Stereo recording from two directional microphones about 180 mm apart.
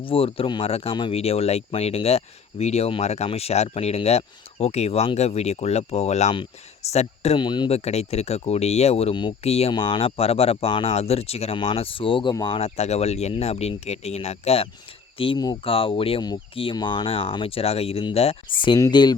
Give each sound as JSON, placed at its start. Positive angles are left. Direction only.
{"t": 0.0, "sound": "speech", "side_deg": 30}
{"t": 12.5, "sound": "speech", "side_deg": 35}